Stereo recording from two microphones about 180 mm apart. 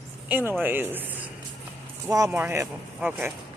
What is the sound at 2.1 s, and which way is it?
Speech, 15° right (ahead or behind).